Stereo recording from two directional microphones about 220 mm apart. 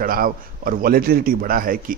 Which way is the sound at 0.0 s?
40° right (ahead or behind).